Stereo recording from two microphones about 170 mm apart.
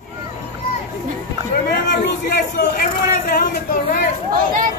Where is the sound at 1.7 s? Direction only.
70° left (ahead or behind).